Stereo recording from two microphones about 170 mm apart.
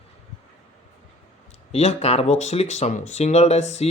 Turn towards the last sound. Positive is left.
turn(degrees=40)  # may be behind; listen again after turning